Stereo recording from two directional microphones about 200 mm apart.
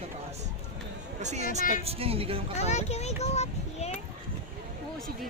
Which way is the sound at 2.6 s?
35° left (ahead or behind).